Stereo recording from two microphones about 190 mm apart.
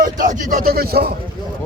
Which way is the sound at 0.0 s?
45° right (ahead or behind).